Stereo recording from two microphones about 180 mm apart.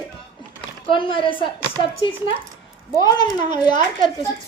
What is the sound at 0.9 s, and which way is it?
Speech, 30° left (ahead or behind).